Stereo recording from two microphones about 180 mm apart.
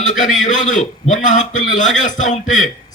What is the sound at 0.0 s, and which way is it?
A man's voice, 45° left (ahead or behind).